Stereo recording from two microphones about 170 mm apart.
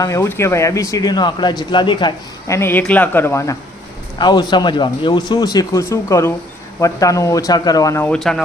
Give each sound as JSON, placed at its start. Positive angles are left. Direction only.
{"t": 0.0, "sound": "speech", "side_deg": 15}
{"t": 2.6, "sound": "speech", "side_deg": 10}